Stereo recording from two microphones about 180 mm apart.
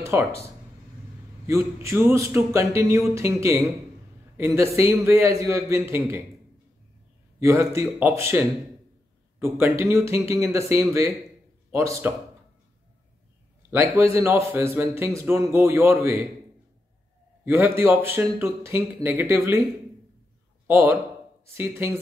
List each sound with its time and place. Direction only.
0.0 s speech: 15° right (ahead or behind)
1.5 s a man's voice: 15° right (ahead or behind)
4.7 s a man's voice: 15° right (ahead or behind)
7.3 s a man's voice: 15° right (ahead or behind)
13.7 s a man's voice: 15° right (ahead or behind)
17.5 s a man's voice: 10° right (ahead or behind)
20.6 s a man's voice: 15° right (ahead or behind)